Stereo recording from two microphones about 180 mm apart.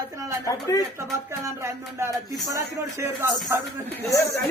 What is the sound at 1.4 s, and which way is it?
Music, 15° right (ahead or behind).